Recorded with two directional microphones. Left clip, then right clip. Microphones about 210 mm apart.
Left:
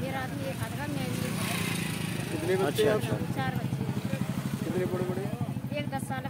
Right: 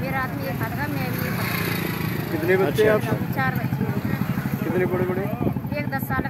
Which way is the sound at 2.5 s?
30° right (ahead or behind).